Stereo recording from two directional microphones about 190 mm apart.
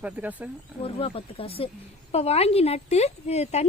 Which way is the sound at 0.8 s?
30° left (ahead or behind).